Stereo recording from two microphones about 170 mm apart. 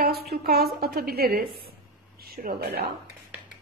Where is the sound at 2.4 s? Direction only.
50° right (ahead or behind).